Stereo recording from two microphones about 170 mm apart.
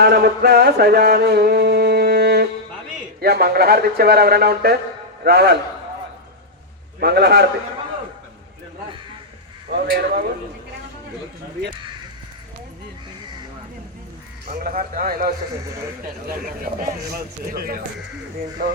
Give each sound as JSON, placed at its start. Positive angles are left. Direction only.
{"t": 0.0, "sound": "music", "side_deg": -70}
{"t": 7.0, "sound": "music", "side_deg": -70}
{"t": 9.9, "sound": "music", "side_deg": -65}
{"t": 14.4, "sound": "speech", "side_deg": -65}
{"t": 16.8, "sound": "speech", "side_deg": -65}
{"t": 18.6, "sound": "music", "side_deg": -65}